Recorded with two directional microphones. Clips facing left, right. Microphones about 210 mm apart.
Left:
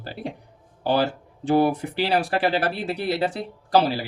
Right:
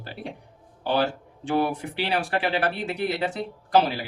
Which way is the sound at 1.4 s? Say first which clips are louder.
Left 5 dB; 40° left (ahead or behind).